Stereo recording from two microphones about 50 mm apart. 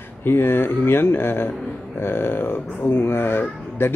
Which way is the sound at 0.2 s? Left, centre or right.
Left.